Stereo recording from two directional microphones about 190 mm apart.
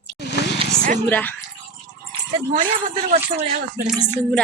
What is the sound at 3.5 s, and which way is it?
Speech, 50° right (ahead or behind).